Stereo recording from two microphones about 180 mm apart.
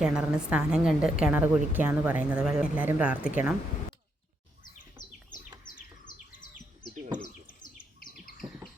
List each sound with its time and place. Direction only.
0.0 s a woman's voice: 5° right (ahead or behind)
5.0 s bird: 15° right (ahead or behind)
8.0 s chirp: 50° left (ahead or behind)